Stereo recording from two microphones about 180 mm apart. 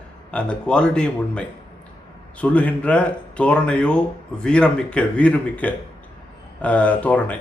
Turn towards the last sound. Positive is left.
turn(degrees=10)  # may be behind; listen again after turning